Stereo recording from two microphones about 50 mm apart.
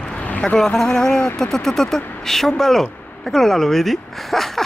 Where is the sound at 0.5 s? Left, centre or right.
Centre.